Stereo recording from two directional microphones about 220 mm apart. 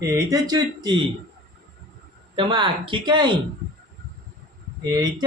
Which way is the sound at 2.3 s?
20° right (ahead or behind).